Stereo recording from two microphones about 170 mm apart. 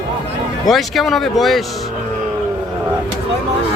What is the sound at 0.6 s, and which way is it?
Speech, centre (ahead or behind).